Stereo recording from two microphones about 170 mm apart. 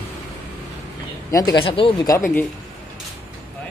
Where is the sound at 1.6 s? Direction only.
30° left (ahead or behind).